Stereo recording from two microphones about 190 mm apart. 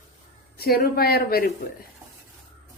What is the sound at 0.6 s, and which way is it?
Speech, 55° left (ahead or behind).